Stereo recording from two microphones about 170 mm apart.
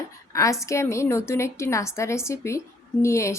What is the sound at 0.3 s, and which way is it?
A woman's voice, 20° left (ahead or behind).